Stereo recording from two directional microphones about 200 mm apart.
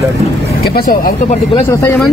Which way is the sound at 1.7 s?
10° left (ahead or behind).